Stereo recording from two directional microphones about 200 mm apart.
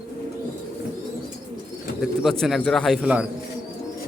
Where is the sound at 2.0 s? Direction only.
Centre (ahead or behind).